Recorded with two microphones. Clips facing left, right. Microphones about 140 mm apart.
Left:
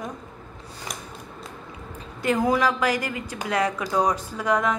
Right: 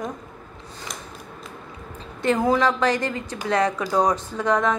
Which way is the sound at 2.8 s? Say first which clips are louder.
Right 3 dB; 30° right (ahead or behind).